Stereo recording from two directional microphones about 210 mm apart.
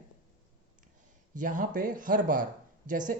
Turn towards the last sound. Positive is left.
turn(degrees=-40)  # may be behind; listen again after turning